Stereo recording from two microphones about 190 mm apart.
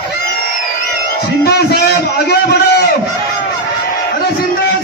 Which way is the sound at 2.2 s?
60° left (ahead or behind).